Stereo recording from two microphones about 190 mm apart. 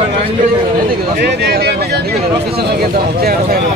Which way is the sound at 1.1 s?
60° right (ahead or behind).